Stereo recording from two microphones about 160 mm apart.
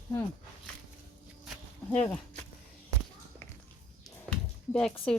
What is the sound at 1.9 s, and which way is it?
Speech, 10° left (ahead or behind).